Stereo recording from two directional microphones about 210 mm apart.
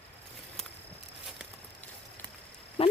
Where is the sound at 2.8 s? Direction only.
25° left (ahead or behind).